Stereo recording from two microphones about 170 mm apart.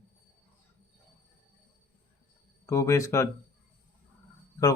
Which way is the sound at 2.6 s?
15° left (ahead or behind).